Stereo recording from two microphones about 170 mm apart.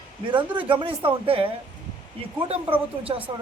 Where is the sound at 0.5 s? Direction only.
30° right (ahead or behind).